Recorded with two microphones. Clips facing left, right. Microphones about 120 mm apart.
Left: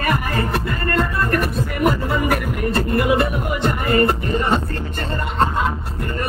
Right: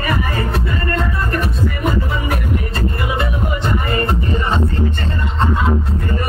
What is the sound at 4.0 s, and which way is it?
Music, 5° left (ahead or behind).